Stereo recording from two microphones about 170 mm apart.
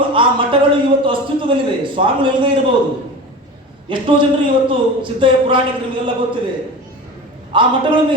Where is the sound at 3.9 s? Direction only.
30° right (ahead or behind).